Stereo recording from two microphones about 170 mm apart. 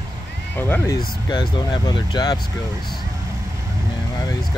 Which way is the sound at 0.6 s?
15° left (ahead or behind).